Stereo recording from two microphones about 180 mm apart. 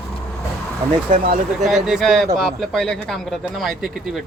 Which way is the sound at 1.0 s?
50° right (ahead or behind).